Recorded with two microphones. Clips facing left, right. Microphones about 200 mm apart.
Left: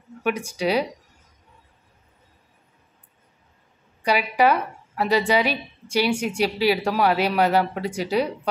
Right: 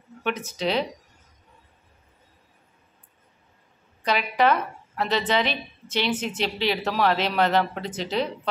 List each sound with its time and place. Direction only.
0.2 s a woman's voice: 10° left (ahead or behind)
4.0 s a woman's voice: 10° left (ahead or behind)